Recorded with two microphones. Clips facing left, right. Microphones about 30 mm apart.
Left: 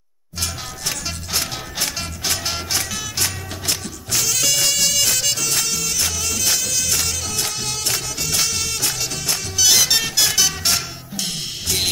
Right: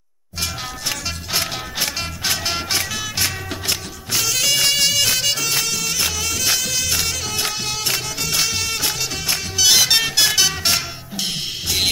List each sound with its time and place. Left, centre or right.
0.4 s music: centre